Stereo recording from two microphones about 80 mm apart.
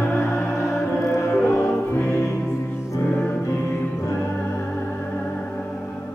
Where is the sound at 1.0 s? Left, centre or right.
Left.